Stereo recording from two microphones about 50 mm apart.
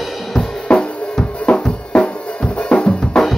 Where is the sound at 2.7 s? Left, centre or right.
Centre.